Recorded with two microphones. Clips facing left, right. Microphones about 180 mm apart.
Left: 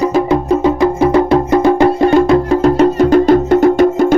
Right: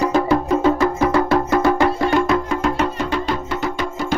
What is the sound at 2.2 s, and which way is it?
Music, 35° left (ahead or behind).